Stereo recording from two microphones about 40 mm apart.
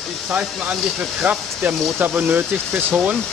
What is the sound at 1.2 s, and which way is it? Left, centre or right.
Speech, right.